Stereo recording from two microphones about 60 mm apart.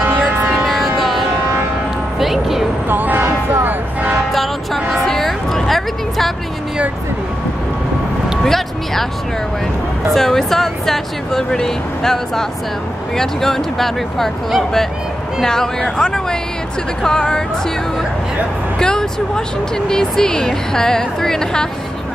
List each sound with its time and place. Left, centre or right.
0.0 s music: right
0.7 s music: centre
2.9 s music: right
4.7 s a sound: centre
8.5 s speech: centre
10.1 s speech: centre
18.8 s speech: centre